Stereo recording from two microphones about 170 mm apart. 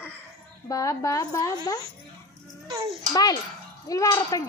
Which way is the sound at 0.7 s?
20° left (ahead or behind).